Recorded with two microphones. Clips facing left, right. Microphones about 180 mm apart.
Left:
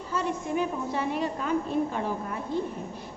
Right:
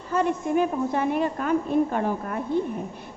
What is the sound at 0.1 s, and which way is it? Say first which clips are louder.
A woman's voice: right 6 dB; 55° right (ahead or behind).